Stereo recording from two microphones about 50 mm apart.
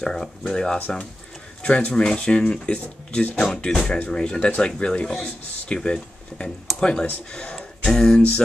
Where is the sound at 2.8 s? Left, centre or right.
Left.